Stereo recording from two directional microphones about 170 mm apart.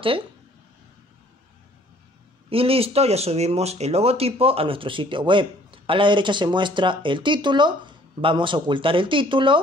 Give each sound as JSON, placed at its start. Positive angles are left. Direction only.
{"t": 2.5, "sound": "speech", "side_deg": -35}